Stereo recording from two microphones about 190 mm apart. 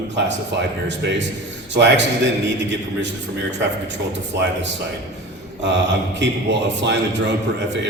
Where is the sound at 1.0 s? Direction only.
65° right (ahead or behind).